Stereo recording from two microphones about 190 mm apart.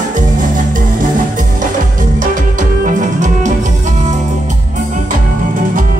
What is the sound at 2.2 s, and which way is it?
Music, 45° right (ahead or behind).